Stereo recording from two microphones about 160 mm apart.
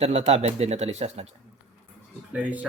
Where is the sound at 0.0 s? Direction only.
40° right (ahead or behind).